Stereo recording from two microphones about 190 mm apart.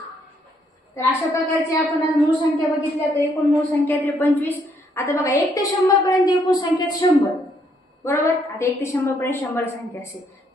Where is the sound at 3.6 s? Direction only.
10° left (ahead or behind).